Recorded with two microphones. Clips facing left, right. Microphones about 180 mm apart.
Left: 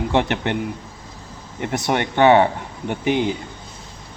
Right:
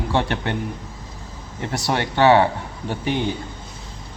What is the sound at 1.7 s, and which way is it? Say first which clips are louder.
A man's voice: left 2 dB; 20° left (ahead or behind).